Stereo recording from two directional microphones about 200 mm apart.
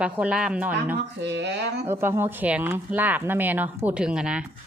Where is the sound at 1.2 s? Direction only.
60° right (ahead or behind).